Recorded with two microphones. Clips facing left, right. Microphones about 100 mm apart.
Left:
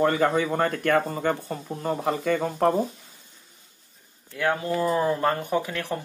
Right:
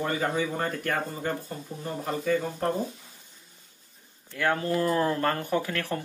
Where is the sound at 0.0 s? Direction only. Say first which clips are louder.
Left 6 dB; 65° left (ahead or behind).